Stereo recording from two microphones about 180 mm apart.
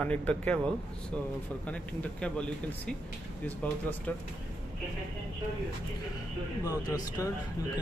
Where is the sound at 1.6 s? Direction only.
5° left (ahead or behind).